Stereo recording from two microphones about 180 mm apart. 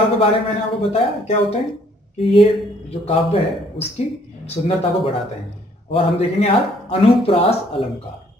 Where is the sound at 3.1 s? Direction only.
35° left (ahead or behind).